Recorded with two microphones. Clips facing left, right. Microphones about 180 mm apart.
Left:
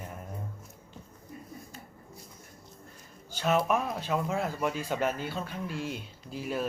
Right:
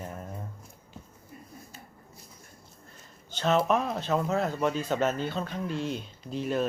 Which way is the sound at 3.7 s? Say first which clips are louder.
Right 3 dB; 10° left (ahead or behind).